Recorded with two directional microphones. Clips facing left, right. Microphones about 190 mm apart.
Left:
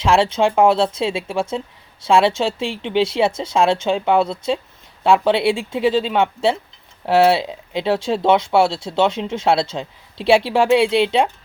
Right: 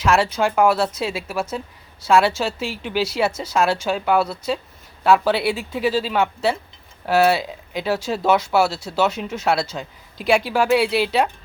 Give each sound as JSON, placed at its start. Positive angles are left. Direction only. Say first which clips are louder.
{"t": 0.0, "sound": "speech", "louder": "left 3 dB", "side_deg": 25}